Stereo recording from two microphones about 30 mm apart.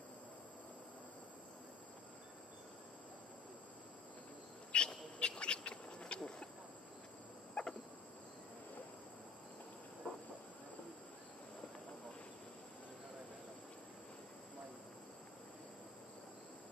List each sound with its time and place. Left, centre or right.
4.7 s a sound: left
7.6 s fowl: left
10.0 s train: left